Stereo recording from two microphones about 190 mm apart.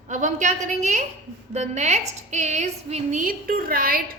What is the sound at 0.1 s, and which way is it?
A woman's voice, 40° right (ahead or behind).